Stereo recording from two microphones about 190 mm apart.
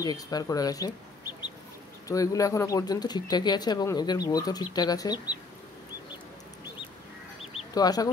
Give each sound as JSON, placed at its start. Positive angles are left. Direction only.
{"t": 0.0, "sound": "speech", "side_deg": 20}
{"t": 2.0, "sound": "speech", "side_deg": 15}
{"t": 7.7, "sound": "speech", "side_deg": 20}